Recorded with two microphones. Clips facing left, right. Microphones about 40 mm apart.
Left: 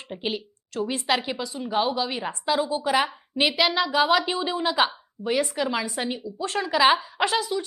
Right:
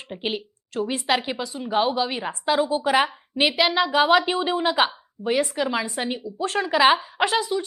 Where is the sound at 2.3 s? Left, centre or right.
Right.